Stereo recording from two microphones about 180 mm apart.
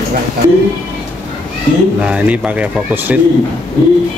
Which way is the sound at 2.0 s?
5° right (ahead or behind).